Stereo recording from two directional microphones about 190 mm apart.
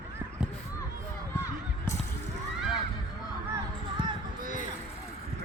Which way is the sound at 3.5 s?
25° right (ahead or behind).